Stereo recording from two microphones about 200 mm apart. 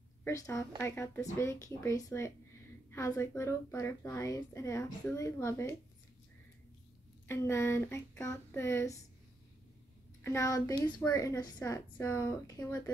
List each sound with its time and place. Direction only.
0.2 s a woman's voice: 15° left (ahead or behind)
7.2 s a woman's voice: 15° left (ahead or behind)
10.2 s a woman's voice: 15° left (ahead or behind)